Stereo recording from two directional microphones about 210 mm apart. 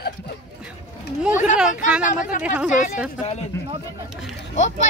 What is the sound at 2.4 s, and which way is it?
Speech, 5° right (ahead or behind).